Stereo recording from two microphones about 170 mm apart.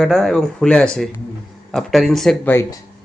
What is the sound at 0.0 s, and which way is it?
A man's voice, centre (ahead or behind).